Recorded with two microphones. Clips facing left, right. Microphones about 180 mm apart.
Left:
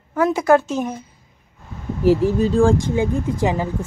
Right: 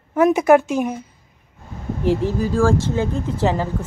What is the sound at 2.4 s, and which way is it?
Speech, 20° left (ahead or behind).